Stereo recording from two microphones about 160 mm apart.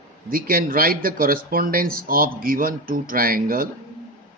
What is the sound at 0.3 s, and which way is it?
Speech, 65° right (ahead or behind).